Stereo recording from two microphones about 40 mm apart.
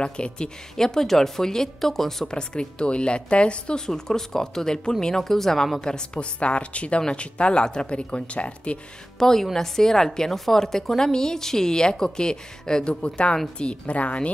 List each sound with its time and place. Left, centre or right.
0.0 s a woman's voice: left
0.7 s a woman's voice: centre
2.2 s a woman's voice: left
6.4 s a woman's voice: left
9.2 s a woman's voice: centre; by 14.3 s left